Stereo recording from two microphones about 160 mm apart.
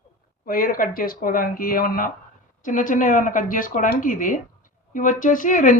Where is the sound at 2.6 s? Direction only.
55° left (ahead or behind).